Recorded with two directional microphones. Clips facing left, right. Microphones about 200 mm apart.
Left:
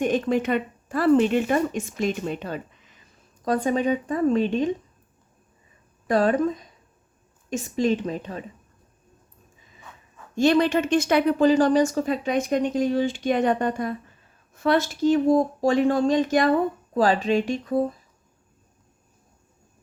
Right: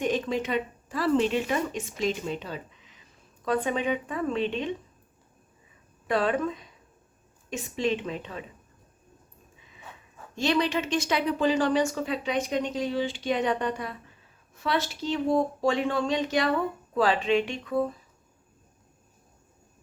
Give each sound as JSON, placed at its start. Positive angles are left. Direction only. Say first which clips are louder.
{"t": 0.0, "sound": "a woman's voice", "louder": "left 5 dB", "side_deg": 55}
{"t": 3.4, "sound": "speech", "louder": "left 4 dB", "side_deg": 40}
{"t": 6.1, "sound": "speech", "louder": "left 5 dB", "side_deg": 40}
{"t": 10.3, "sound": "a woman's voice", "louder": "left 6 dB", "side_deg": 50}